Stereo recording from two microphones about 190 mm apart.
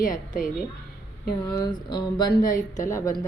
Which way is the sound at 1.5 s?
20° left (ahead or behind).